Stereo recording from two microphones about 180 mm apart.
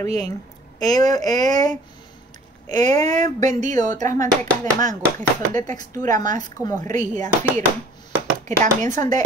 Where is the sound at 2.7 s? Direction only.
40° right (ahead or behind).